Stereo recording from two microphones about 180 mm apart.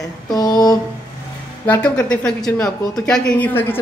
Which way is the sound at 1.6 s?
5° left (ahead or behind).